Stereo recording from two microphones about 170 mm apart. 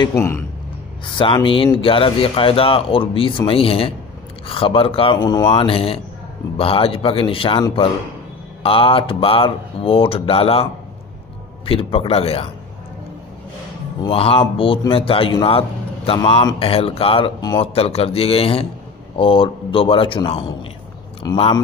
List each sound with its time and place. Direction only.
0.1 s a man's voice: 15° left (ahead or behind)
1.1 s speech: 30° left (ahead or behind)
14.0 s speech: 35° left (ahead or behind)